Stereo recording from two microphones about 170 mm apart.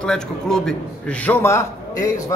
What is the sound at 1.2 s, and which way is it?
Speech, 15° left (ahead or behind).